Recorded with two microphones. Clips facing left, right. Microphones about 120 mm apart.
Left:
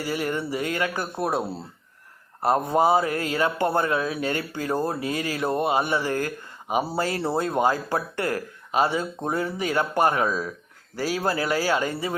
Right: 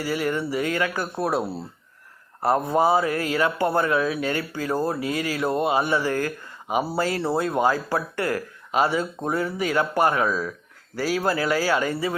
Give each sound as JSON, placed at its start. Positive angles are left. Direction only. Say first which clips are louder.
{"t": 0.0, "sound": "speech", "louder": "right 2 dB", "side_deg": 25}
{"t": 2.4, "sound": "speech", "louder": "even", "side_deg": 20}